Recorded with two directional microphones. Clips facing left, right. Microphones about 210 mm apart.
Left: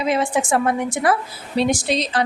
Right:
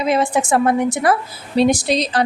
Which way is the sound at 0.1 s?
40° right (ahead or behind).